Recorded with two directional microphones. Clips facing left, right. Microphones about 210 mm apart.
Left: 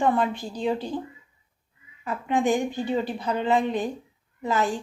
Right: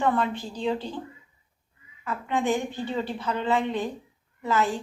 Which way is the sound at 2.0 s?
15° left (ahead or behind).